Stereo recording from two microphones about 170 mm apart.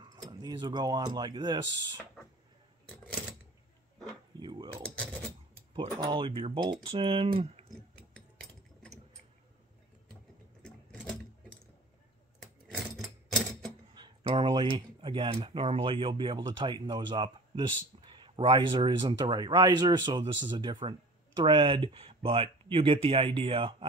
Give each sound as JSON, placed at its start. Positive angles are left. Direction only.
{"t": 0.0, "sound": "speech", "side_deg": -25}
{"t": 4.4, "sound": "speech", "side_deg": -25}
{"t": 5.7, "sound": "speech", "side_deg": -25}
{"t": 10.6, "sound": "sewing machine", "side_deg": 5}
{"t": 13.9, "sound": "speech", "side_deg": -30}